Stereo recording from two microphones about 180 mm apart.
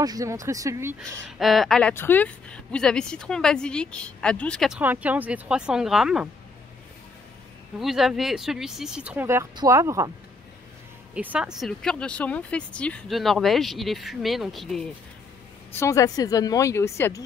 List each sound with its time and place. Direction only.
0.0 s speech: 20° right (ahead or behind)
1.4 s speech: centre (ahead or behind)
7.8 s speech: centre (ahead or behind)
11.1 s speech: 5° right (ahead or behind)
15.7 s a woman's voice: 15° left (ahead or behind)